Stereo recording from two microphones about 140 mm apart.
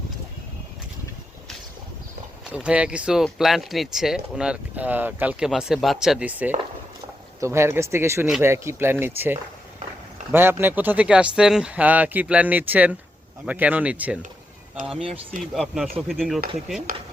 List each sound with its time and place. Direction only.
2.5 s speech: 10° right (ahead or behind)
15.5 s speech: centre (ahead or behind)